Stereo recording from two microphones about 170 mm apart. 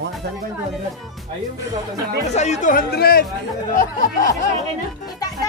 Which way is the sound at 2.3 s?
40° left (ahead or behind).